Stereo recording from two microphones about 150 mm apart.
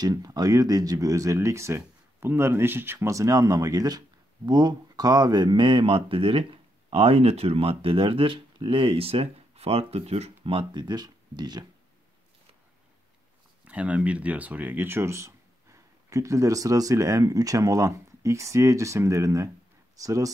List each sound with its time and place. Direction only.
0.0 s speech: 25° right (ahead or behind)
13.7 s speech: 10° right (ahead or behind)